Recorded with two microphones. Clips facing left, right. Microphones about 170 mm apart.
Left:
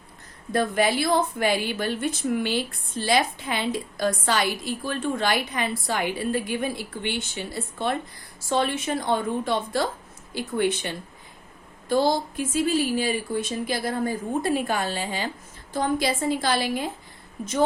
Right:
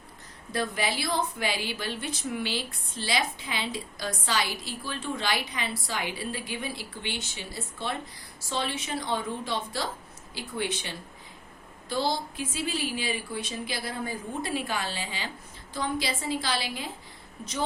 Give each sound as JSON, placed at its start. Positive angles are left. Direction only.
{"t": 0.5, "sound": "a woman's voice", "side_deg": 50}